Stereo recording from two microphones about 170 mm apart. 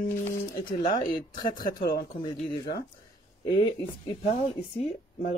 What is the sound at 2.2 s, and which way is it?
Speech, 25° left (ahead or behind).